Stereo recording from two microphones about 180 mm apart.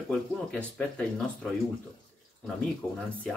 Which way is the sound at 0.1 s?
5° left (ahead or behind).